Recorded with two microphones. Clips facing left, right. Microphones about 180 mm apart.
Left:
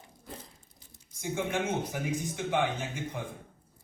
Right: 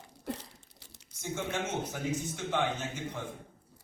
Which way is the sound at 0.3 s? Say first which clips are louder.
Right 8 dB; 75° right (ahead or behind).